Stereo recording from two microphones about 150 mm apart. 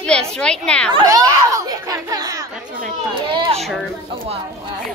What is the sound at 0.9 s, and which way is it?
A child's voice, 25° right (ahead or behind).